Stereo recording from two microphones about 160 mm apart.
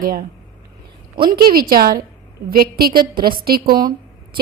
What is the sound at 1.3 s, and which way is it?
A woman's voice, 65° right (ahead or behind).